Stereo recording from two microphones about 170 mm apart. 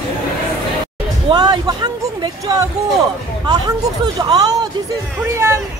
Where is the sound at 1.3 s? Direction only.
25° right (ahead or behind).